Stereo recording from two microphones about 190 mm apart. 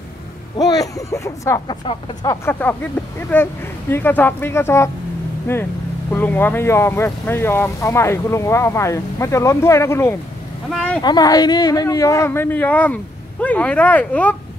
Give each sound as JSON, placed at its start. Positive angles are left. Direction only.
{"t": 0.6, "sound": "speech", "side_deg": 20}
{"t": 11.0, "sound": "speech", "side_deg": 20}